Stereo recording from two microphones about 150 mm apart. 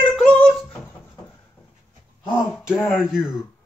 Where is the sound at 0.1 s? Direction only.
5° left (ahead or behind).